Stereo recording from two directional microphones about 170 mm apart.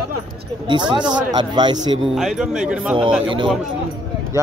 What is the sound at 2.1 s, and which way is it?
Speech, 5° right (ahead or behind).